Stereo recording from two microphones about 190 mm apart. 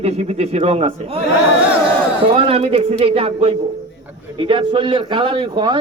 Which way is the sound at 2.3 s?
30° right (ahead or behind).